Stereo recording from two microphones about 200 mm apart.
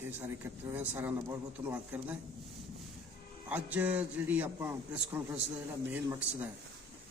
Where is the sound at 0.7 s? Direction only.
10° right (ahead or behind).